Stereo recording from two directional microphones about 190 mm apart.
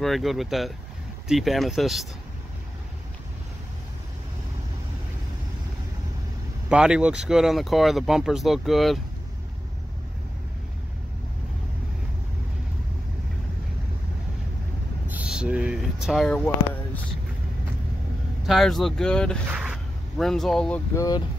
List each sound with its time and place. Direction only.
0.0 s speech: centre (ahead or behind)
6.7 s speech: 5° right (ahead or behind)
15.0 s speech: 5° right (ahead or behind)
18.5 s speech: centre (ahead or behind)
19.4 s speech: 5° right (ahead or behind); by 21.2 s 15° left (ahead or behind)